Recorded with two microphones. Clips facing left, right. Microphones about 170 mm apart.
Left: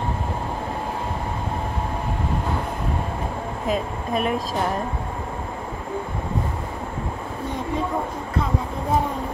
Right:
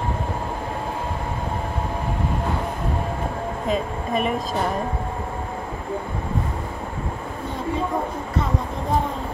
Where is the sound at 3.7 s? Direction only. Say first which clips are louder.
Even; centre (ahead or behind).